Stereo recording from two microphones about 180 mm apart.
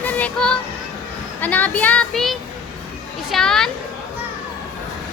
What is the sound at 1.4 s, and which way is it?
Speech, 10° left (ahead or behind).